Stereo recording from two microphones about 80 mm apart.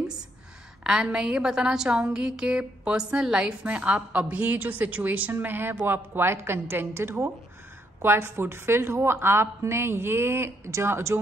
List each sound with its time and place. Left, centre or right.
0.8 s a woman's voice: centre; by 11.1 s right